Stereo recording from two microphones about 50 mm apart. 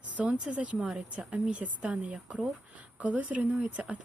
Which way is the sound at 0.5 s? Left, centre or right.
Right.